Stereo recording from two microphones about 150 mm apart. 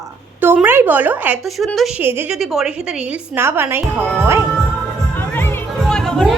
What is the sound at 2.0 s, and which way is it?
Speech, 15° right (ahead or behind).